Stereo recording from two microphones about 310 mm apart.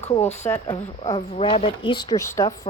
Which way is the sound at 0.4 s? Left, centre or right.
Centre.